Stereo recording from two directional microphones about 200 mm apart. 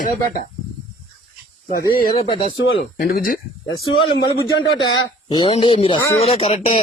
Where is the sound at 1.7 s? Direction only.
50° left (ahead or behind).